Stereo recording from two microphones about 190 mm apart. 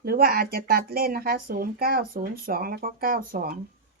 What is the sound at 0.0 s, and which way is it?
Speech, 55° right (ahead or behind).